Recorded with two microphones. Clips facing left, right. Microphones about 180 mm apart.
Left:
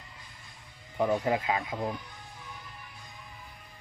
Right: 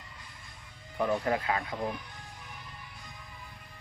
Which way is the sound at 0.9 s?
20° left (ahead or behind).